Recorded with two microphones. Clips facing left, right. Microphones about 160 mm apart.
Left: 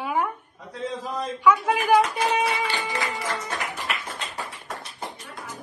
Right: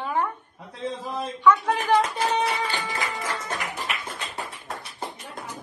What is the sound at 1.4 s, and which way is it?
A woman's voice, 10° left (ahead or behind).